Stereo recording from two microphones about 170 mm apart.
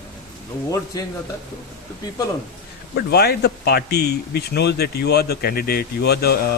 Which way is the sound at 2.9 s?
70° left (ahead or behind).